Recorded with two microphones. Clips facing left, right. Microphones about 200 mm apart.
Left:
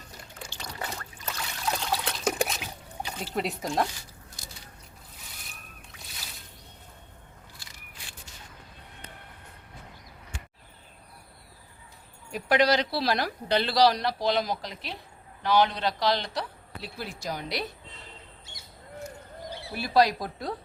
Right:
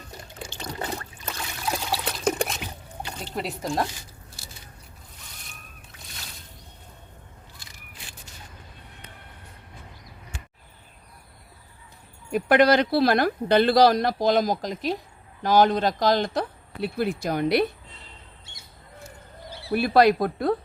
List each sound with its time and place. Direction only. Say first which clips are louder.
0.4 s a sound: right 5 dB; 25° right (ahead or behind)
1.6 s trickle: right 1 dB; 5° right (ahead or behind)
3.2 s speech: right 1 dB; centre (ahead or behind)
5.9 s a sound: right 3 dB; centre (ahead or behind)
12.3 s speech: right 5 dB; 55° right (ahead or behind)
19.7 s speech: right 5 dB; 60° right (ahead or behind)